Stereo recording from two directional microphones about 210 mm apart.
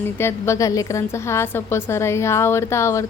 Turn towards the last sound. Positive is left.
turn(degrees=15)  # may be behind; listen again after turning